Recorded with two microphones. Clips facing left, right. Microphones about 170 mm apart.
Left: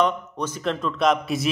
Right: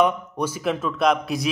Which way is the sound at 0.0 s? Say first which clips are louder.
Right 2 dB; 10° right (ahead or behind).